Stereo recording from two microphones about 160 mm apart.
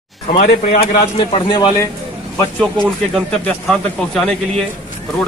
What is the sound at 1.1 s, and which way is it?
Speech, 25° left (ahead or behind).